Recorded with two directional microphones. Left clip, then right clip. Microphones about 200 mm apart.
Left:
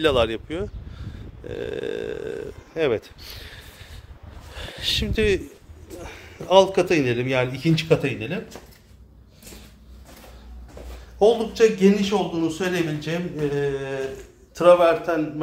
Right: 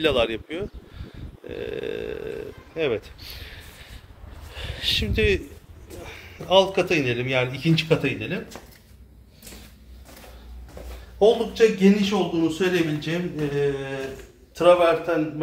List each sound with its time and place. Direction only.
0.0 s speech: 15° left (ahead or behind)
2.7 s speech: 30° left (ahead or behind)
4.6 s a man's voice: 15° left (ahead or behind)
8.0 s speech: 10° left (ahead or behind)
11.1 s speech: 5° left (ahead or behind)
13.6 s a sound: 5° left (ahead or behind)
14.6 s speech: 10° left (ahead or behind)